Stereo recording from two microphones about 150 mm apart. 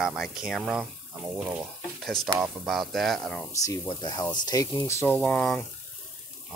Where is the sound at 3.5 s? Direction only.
20° left (ahead or behind); by 5.6 s 5° left (ahead or behind).